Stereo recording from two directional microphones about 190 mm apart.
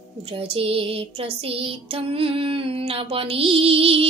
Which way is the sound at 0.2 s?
30° right (ahead or behind).